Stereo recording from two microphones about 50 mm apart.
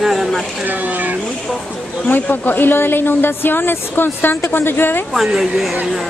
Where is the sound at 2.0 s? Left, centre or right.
Left.